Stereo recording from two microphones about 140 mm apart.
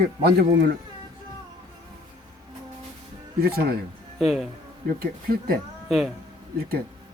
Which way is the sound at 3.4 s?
90° right.